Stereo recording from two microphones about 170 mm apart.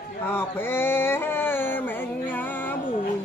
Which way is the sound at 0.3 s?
15° left (ahead or behind).